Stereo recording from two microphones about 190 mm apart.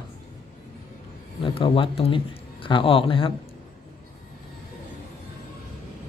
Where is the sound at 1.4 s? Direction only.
30° left (ahead or behind).